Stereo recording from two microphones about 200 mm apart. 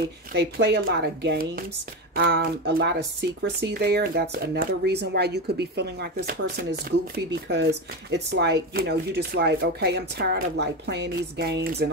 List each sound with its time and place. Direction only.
0.3 s speech: 55° right (ahead or behind)